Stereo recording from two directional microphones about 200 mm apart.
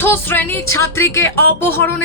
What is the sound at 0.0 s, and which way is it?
Speech, 10° left (ahead or behind).